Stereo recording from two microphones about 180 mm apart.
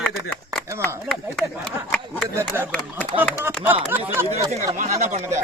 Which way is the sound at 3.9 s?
10° right (ahead or behind).